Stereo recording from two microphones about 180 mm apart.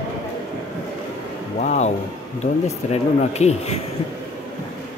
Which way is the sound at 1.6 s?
40° left (ahead or behind).